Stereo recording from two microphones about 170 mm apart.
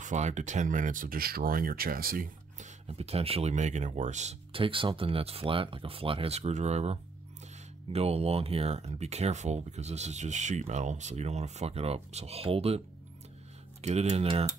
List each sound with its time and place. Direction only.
0.0 s speech: 45° right (ahead or behind)
2.9 s speech: 35° right (ahead or behind)